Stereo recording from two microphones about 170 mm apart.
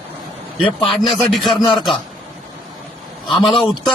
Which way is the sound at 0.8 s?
Centre (ahead or behind).